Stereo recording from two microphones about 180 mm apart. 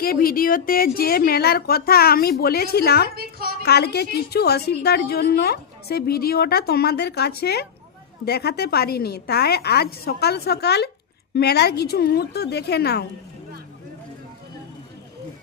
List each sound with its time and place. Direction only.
0.0 s a woman's voice: 55° left (ahead or behind)
3.2 s a sound: 60° right (ahead or behind)
3.6 s a woman's voice: 65° left (ahead or behind)